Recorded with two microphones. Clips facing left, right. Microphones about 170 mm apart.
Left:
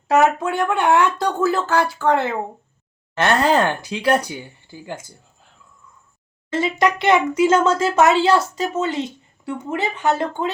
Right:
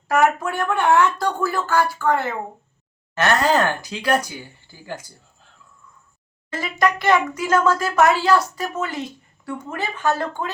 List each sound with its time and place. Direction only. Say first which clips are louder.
0.1 s speech: left 2 dB; 20° left (ahead or behind)
6.5 s speech: left 3 dB; 25° left (ahead or behind)